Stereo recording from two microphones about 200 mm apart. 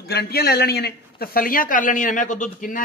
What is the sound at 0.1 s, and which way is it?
A man's voice, 50° left (ahead or behind).